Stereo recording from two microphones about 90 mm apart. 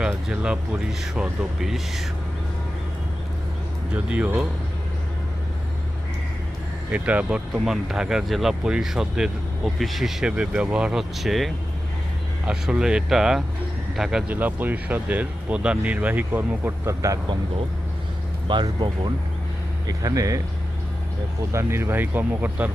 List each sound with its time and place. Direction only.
0.3 s speech: 10° right (ahead or behind)
3.9 s speech: 15° right (ahead or behind)
6.9 s speech: 15° right (ahead or behind)
14.3 s speech: 20° right (ahead or behind)
16.8 s speech: 35° right (ahead or behind)
18.4 s speech: 55° right (ahead or behind)
19.9 s speech: 40° right (ahead or behind)
21.5 s speech: 30° right (ahead or behind)